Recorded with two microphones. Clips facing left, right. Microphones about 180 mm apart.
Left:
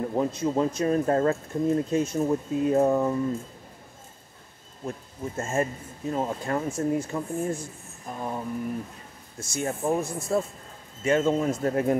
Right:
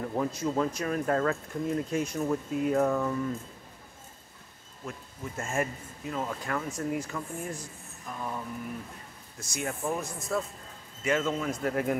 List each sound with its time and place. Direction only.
0.1 s speech: 20° left (ahead or behind)
4.8 s speech: 30° left (ahead or behind)